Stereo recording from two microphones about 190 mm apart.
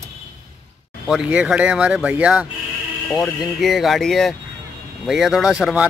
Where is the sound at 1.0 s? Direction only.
5° right (ahead or behind).